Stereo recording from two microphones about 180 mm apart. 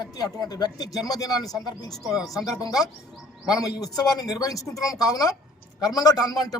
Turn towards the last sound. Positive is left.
turn(degrees=20)  # may be behind; listen again after turning